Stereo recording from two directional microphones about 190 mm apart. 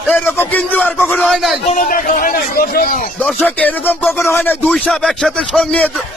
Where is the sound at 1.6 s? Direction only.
45° left (ahead or behind).